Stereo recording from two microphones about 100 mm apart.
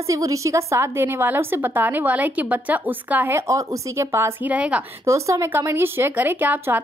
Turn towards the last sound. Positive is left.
turn(degrees=-15)  # may be behind; listen again after turning